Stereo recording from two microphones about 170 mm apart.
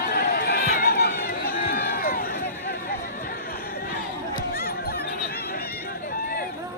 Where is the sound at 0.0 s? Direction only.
60° left (ahead or behind).